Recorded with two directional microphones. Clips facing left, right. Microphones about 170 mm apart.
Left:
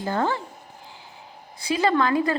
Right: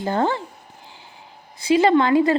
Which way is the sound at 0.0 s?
25° right (ahead or behind).